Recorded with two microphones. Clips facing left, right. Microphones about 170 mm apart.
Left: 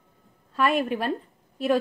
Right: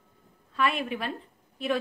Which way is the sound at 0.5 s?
45° left (ahead or behind).